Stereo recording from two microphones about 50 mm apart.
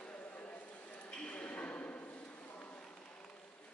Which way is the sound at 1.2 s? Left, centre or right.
Left.